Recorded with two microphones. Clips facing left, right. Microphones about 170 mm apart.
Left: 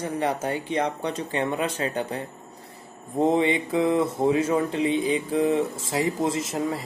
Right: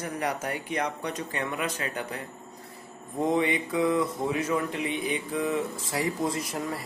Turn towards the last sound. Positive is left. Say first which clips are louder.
# left 5 dB
turn(degrees=25)  # may be behind; listen again after turning